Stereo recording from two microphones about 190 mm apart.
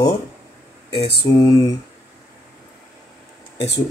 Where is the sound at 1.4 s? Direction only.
20° left (ahead or behind).